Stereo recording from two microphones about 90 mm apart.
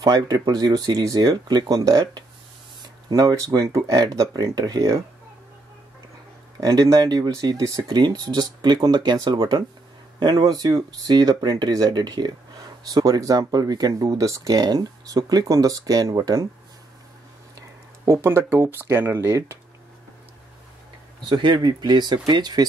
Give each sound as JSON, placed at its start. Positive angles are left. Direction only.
{"t": 0.0, "sound": "speech", "side_deg": -45}
{"t": 6.6, "sound": "speech", "side_deg": -40}
{"t": 17.6, "sound": "speech", "side_deg": -35}
{"t": 21.3, "sound": "speech", "side_deg": -55}